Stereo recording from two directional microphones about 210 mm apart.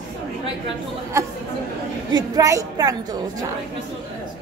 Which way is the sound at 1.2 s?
15° right (ahead or behind).